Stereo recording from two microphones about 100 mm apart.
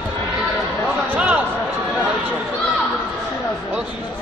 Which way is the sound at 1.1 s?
15° right (ahead or behind).